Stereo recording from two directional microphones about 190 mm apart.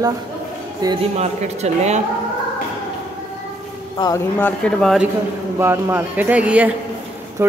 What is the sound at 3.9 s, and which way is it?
Speech, 20° left (ahead or behind).